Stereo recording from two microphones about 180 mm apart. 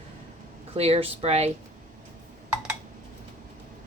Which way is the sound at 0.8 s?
35° right (ahead or behind).